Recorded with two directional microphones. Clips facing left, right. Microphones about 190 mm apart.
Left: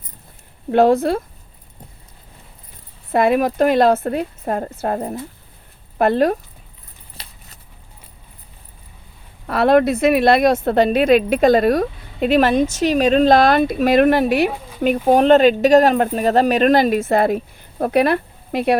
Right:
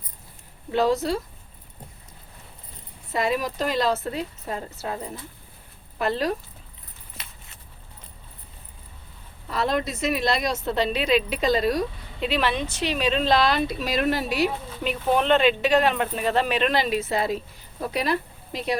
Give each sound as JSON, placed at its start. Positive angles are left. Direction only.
{"t": 0.7, "sound": "a woman's voice", "side_deg": 55}
{"t": 3.1, "sound": "a woman's voice", "side_deg": 55}
{"t": 7.2, "sound": "a sound", "side_deg": 35}
{"t": 9.5, "sound": "speech", "side_deg": 60}
{"t": 14.8, "sound": "speech", "side_deg": 45}